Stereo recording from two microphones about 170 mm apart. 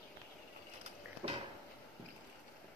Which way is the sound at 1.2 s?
35° right (ahead or behind).